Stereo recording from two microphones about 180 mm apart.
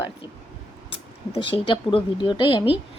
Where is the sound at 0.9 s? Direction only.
30° left (ahead or behind).